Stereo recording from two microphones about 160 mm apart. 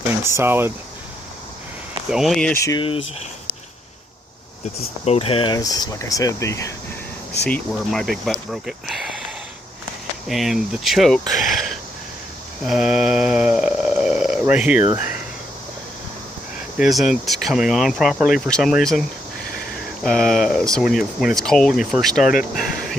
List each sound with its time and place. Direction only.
0.3 s speech: 15° right (ahead or behind)
2.0 s speech: centre (ahead or behind)
2.7 s speech: 35° left (ahead or behind)
5.0 s speech: 40° left (ahead or behind); by 6.7 s 20° left (ahead or behind)
7.4 s speech: 5° left (ahead or behind)
10.2 s speech: centre (ahead or behind)
11.3 s a sound: centre (ahead or behind)
12.6 s speech: 5° right (ahead or behind)
16.7 s speech: centre (ahead or behind)